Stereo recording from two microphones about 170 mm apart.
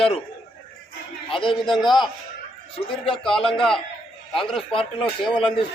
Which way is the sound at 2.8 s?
30° left (ahead or behind).